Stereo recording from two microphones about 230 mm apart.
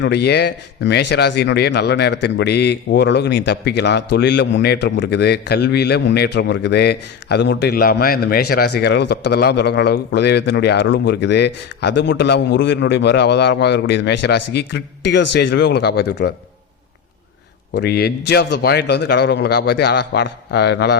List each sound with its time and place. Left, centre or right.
0.0 s a man's voice: left
17.7 s a man's voice: left